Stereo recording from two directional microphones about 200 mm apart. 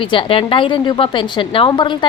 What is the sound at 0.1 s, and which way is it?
A woman's voice, 25° left (ahead or behind).